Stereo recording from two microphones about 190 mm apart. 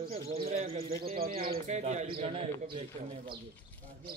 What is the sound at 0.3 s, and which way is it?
Speech, 30° right (ahead or behind).